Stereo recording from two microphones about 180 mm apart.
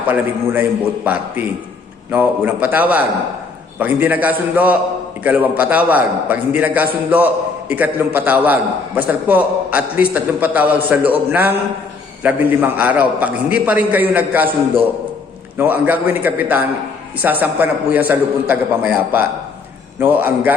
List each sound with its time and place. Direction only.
0.1 s a man's voice: 10° right (ahead or behind)
15.5 s a man's voice: 10° right (ahead or behind)